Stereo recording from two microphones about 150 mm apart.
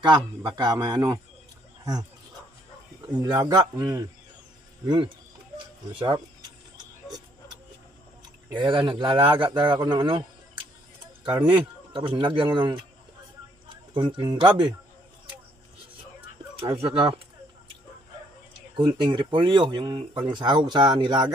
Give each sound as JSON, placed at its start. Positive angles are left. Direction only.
{"t": 0.0, "sound": "a man's voice", "side_deg": -30}
{"t": 3.1, "sound": "a man's voice", "side_deg": -25}
{"t": 6.8, "sound": "a sound", "side_deg": -25}
{"t": 8.5, "sound": "speech", "side_deg": -30}
{"t": 13.9, "sound": "speech", "side_deg": -35}
{"t": 16.6, "sound": "speech", "side_deg": -40}
{"t": 18.8, "sound": "speech", "side_deg": -30}